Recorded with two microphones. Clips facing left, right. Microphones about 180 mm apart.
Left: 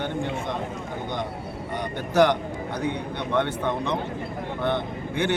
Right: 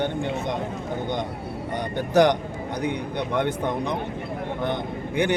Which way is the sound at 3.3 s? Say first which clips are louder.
Left 1 dB; 15° right (ahead or behind).